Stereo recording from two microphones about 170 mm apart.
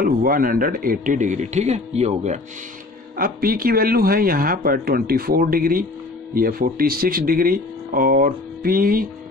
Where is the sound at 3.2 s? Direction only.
60° right (ahead or behind).